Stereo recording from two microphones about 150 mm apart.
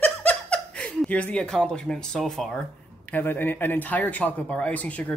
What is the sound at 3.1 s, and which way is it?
Speech, 10° left (ahead or behind).